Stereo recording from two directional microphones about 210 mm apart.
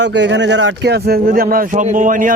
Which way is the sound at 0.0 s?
55° right (ahead or behind).